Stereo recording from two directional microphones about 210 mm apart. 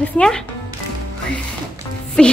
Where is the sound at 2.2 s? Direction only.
5° left (ahead or behind).